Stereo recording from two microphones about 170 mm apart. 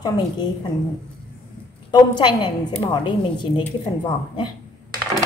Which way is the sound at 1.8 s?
25° left (ahead or behind).